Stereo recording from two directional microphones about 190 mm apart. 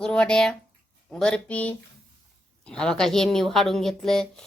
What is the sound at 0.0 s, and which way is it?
A woman's voice, 5° left (ahead or behind).